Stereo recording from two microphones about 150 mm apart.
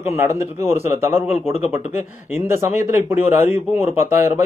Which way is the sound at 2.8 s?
15° right (ahead or behind).